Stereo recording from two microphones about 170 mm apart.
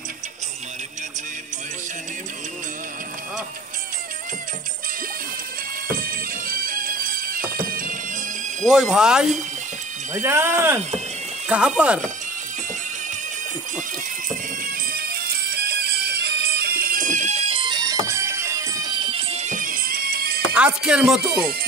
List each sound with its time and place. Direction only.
5.9 s music: 55° right (ahead or behind)
8.6 s speech: centre (ahead or behind)
10.1 s speech: 15° right (ahead or behind)
14.6 s bagpipes: 60° right (ahead or behind); by 17.9 s 25° right (ahead or behind)
18.0 s music: 15° right (ahead or behind); by 20.4 s 65° right (ahead or behind)
20.5 s speech: 5° right (ahead or behind)